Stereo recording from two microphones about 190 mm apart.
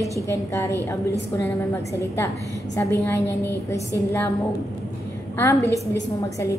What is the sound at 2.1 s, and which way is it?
A woman's voice, 15° left (ahead or behind).